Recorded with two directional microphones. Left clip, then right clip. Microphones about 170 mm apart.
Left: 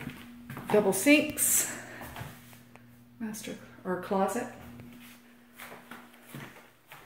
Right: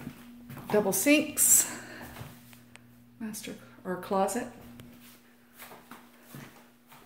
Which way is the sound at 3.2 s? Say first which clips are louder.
Left 1 dB; 15° right (ahead or behind).